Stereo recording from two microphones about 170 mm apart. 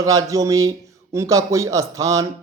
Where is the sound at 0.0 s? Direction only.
20° right (ahead or behind).